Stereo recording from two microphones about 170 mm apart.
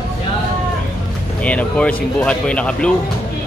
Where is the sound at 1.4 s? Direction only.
5° left (ahead or behind).